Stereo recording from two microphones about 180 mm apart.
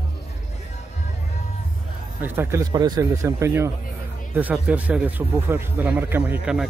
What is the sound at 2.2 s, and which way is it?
Music, 10° right (ahead or behind).